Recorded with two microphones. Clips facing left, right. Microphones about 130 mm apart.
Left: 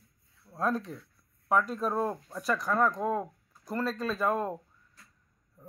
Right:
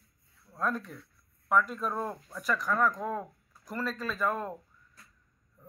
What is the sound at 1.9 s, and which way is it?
Speech, 15° left (ahead or behind).